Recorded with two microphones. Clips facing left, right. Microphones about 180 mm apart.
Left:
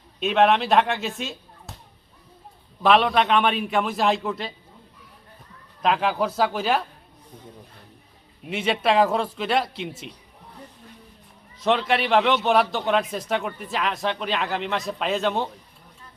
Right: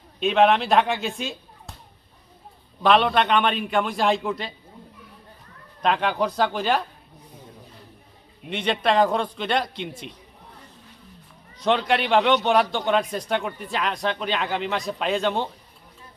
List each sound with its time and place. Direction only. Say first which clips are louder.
0.2 s speech: right 1 dB; centre (ahead or behind)
2.8 s speech: even; centre (ahead or behind)
5.8 s speech: even; 5° left (ahead or behind)
8.4 s speech: even; 5° left (ahead or behind)
11.6 s speech: even; centre (ahead or behind)